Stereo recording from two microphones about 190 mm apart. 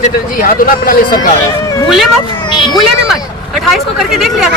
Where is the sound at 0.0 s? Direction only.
50° left (ahead or behind).